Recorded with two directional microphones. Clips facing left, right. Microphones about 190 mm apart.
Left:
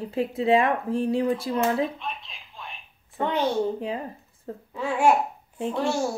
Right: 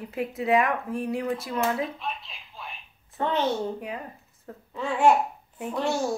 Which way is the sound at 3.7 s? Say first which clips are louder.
Left 5 dB; 30° left (ahead or behind).